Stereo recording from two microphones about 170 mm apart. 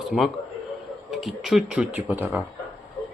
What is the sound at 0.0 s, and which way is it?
Speech, centre (ahead or behind).